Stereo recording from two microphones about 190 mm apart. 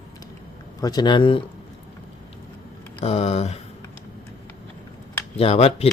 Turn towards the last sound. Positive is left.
turn(degrees=30)  # may be behind; listen again after turning